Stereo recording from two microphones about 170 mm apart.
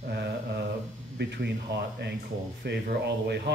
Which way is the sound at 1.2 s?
90° right.